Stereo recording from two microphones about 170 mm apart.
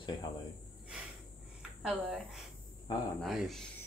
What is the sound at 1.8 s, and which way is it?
Speech, 5° right (ahead or behind).